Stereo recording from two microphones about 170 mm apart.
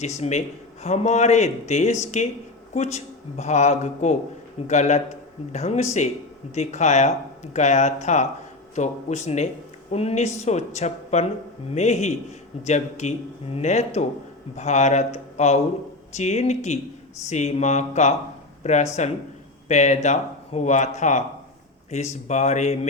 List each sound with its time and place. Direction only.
0.0 s speech: 40° left (ahead or behind)